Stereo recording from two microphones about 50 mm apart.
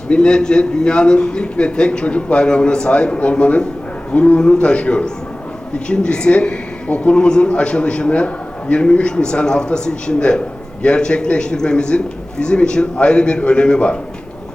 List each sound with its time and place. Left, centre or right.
0.1 s a man's voice: centre